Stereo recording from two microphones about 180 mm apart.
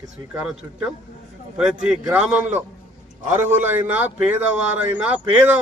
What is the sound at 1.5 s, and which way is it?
Speech, 5° right (ahead or behind).